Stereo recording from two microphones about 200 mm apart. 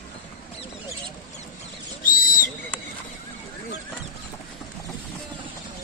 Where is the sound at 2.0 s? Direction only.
45° left (ahead or behind).